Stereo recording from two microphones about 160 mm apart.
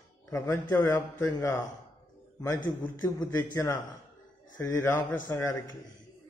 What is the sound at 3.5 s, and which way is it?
A man's voice, 20° left (ahead or behind).